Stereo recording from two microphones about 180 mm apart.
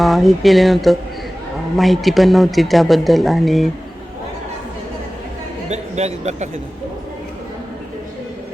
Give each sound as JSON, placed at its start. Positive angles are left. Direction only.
{"t": 0.0, "sound": "speech", "side_deg": 0}
{"t": 5.6, "sound": "a man's voice", "side_deg": -40}